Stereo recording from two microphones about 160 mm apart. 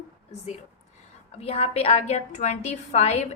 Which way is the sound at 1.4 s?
40° left (ahead or behind).